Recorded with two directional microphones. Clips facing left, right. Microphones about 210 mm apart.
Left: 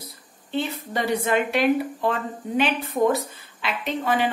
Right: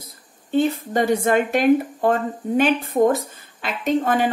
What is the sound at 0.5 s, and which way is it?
Speech, 45° right (ahead or behind).